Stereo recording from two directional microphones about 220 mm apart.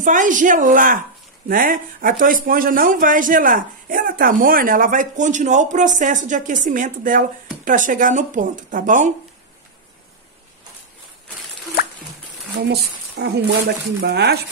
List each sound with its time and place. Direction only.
0.0 s a man's voice: 35° right (ahead or behind)
12.5 s speech: 50° right (ahead or behind)